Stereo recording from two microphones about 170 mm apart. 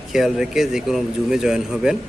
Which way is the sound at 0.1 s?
Centre (ahead or behind).